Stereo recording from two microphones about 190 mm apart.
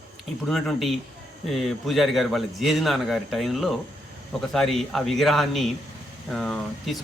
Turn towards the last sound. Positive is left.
turn(degrees=0)  # may be behind; listen again after turning